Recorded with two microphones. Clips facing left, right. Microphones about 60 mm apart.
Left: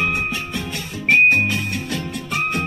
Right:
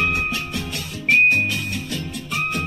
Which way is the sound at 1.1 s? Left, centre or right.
Left.